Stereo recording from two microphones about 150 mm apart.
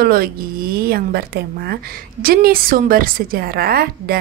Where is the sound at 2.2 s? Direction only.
80° right.